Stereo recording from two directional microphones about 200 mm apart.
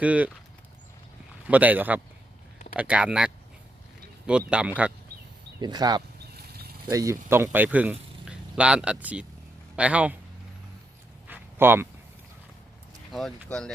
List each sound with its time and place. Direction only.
0.0 s speech: 5° right (ahead or behind)
1.5 s speech: 10° right (ahead or behind)
5.5 s speech: 20° right (ahead or behind)
6.3 s a sound: 50° right (ahead or behind)
6.9 s speech: 15° right (ahead or behind)
11.3 s a sound: 10° right (ahead or behind)
13.1 s speech: centre (ahead or behind)